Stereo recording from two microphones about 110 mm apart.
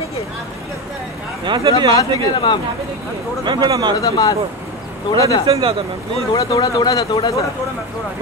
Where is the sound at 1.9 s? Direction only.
45° left (ahead or behind).